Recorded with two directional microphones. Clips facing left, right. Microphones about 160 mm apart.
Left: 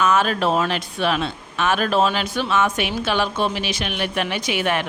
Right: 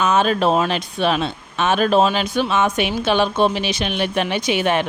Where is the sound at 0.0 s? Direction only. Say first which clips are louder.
Right 2 dB; 20° right (ahead or behind).